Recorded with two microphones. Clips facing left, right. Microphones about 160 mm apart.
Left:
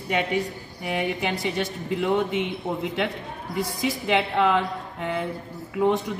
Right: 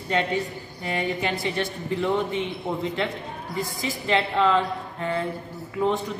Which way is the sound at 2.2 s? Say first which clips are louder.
Left 1 dB; 70° left (ahead or behind).